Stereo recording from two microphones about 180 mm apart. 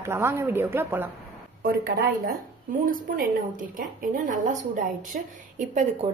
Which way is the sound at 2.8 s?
50° right (ahead or behind).